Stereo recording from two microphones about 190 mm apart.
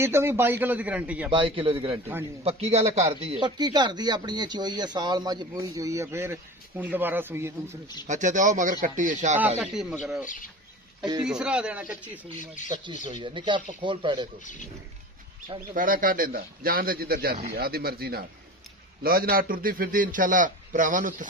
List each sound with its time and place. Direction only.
0.0 s a man's voice: 15° right (ahead or behind)
1.3 s speech: 25° right (ahead or behind)
8.1 s a man's voice: 40° right (ahead or behind)
9.6 s speech: 5° right (ahead or behind)
10.2 s speech: 45° left (ahead or behind)
11.2 s speech: 5° right (ahead or behind)
13.1 s speech: 25° right (ahead or behind)
14.4 s speech: 40° left (ahead or behind)
15.7 s a man's voice: 45° right (ahead or behind)